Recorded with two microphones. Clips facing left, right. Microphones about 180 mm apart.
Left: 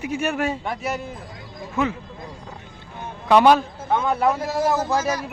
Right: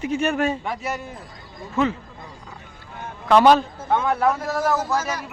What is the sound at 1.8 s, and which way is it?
Speech, 10° left (ahead or behind).